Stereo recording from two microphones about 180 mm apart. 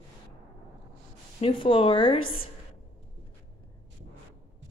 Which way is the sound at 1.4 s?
30° left (ahead or behind).